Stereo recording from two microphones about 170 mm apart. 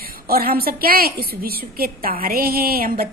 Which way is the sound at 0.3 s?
65° right (ahead or behind).